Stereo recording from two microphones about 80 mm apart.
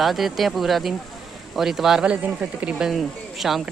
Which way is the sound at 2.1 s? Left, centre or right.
Centre.